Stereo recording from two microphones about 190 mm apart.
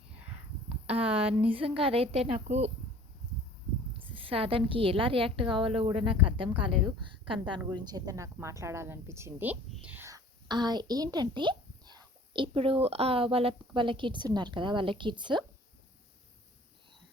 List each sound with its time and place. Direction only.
0.7 s a sound: 30° right (ahead or behind)
1.4 s a woman's voice: 30° right (ahead or behind)
3.9 s a woman's voice: 30° right (ahead or behind)